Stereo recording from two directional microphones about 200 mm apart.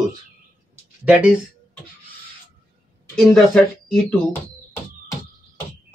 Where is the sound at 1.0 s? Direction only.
5° right (ahead or behind).